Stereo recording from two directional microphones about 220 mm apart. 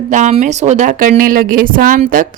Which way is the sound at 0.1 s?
30° right (ahead or behind).